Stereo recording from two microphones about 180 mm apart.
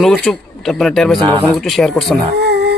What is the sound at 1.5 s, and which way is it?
Speech, centre (ahead or behind).